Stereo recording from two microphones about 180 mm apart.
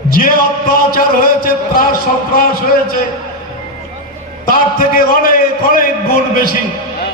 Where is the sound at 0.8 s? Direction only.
55° left (ahead or behind).